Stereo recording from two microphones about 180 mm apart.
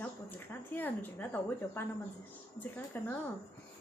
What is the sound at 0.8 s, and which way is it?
A woman's voice, 10° left (ahead or behind).